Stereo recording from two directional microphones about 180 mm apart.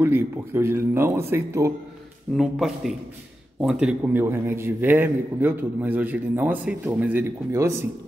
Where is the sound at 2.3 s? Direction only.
Centre (ahead or behind).